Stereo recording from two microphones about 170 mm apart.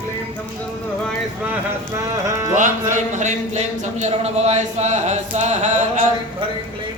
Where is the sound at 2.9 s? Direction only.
45° right (ahead or behind).